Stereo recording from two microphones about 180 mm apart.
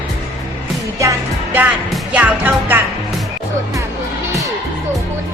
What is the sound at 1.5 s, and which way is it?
Music, 10° right (ahead or behind).